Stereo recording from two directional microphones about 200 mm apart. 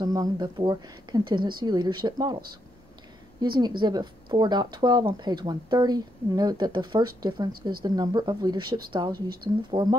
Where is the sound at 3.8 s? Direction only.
20° right (ahead or behind).